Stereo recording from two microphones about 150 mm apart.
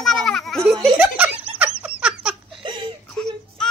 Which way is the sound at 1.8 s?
5° right (ahead or behind).